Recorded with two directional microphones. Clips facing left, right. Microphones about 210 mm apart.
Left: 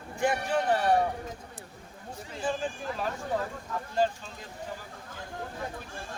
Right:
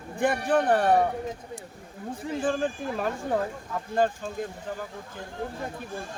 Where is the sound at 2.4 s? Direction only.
55° right (ahead or behind).